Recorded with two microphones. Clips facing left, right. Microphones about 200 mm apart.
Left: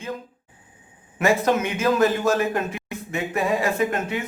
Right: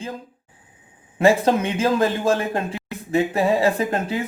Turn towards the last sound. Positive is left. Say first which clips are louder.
# right 1 dB
turn(degrees=-30)  # may be behind; listen again after turning